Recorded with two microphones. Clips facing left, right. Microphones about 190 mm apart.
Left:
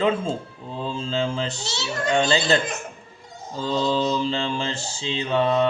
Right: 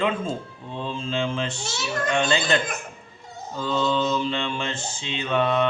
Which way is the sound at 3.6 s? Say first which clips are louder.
Left 1 dB; 35° left (ahead or behind).